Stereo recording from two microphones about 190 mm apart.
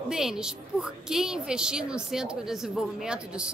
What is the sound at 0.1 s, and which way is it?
A woman's voice, 5° right (ahead or behind).